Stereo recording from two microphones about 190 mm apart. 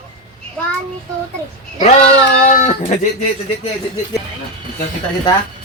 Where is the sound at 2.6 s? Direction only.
40° left (ahead or behind).